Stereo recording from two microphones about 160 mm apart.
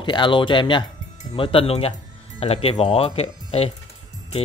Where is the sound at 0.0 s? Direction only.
30° left (ahead or behind).